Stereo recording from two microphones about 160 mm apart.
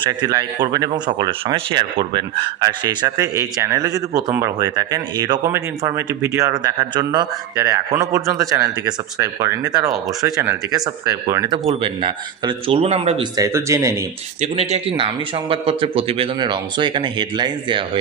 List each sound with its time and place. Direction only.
0.1 s speech: 25° right (ahead or behind)
11.7 s a man's voice: 35° right (ahead or behind)
13.3 s speech: 20° right (ahead or behind)
14.4 s a man's voice: 40° right (ahead or behind)